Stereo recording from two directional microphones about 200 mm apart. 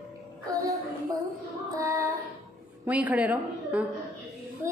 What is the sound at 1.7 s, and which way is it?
Child singing, 15° right (ahead or behind).